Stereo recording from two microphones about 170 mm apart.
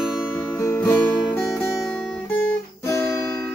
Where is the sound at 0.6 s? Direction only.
15° left (ahead or behind).